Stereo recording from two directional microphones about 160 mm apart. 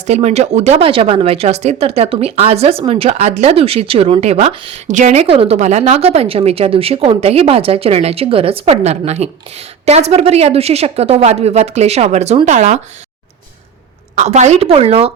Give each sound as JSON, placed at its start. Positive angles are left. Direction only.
{"t": 0.0, "sound": "speech", "side_deg": -40}
{"t": 14.2, "sound": "speech", "side_deg": -45}